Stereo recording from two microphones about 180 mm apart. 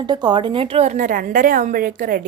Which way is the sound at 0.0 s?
25° right (ahead or behind).